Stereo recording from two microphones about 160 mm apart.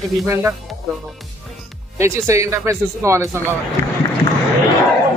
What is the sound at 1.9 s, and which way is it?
Speech, 20° right (ahead or behind).